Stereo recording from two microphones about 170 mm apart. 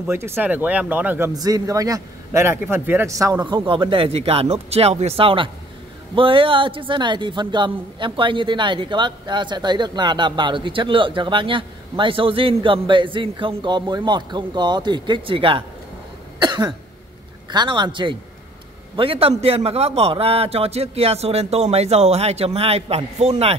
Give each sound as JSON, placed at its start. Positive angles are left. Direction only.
{"t": 0.0, "sound": "a man's voice", "side_deg": -15}
{"t": 16.3, "sound": "cough", "side_deg": -25}
{"t": 17.5, "sound": "a man's voice", "side_deg": -25}